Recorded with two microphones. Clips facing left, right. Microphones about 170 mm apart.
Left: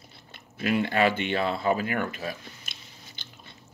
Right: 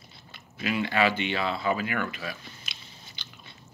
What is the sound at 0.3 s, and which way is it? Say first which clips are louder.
Speech: left 4 dB; 50° left (ahead or behind).